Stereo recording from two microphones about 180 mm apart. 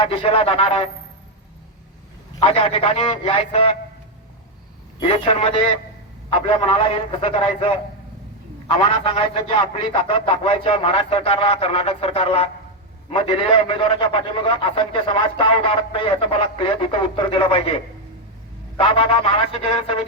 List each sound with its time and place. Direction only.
0.0 s a man's voice: 30° left (ahead or behind)
2.4 s a man's voice: 30° left (ahead or behind)
4.9 s a man's voice: 30° left (ahead or behind)